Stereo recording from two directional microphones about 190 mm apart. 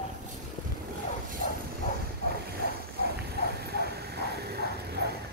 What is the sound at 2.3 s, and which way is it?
Vehicle, 55° right (ahead or behind).